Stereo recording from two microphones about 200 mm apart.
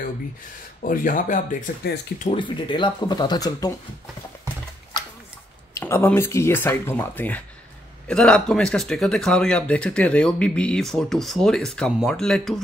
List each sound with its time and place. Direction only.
0.8 s speech: 40° left (ahead or behind)
2.3 s speech: 25° left (ahead or behind)
5.8 s speech: 15° left (ahead or behind)